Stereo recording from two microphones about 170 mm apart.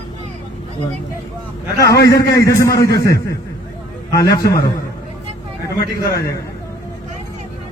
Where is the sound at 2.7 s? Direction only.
65° left (ahead or behind).